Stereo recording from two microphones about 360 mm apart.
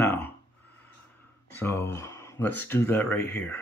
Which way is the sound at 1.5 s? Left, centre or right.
Centre.